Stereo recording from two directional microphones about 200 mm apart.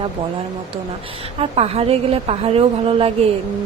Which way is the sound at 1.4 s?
30° right (ahead or behind).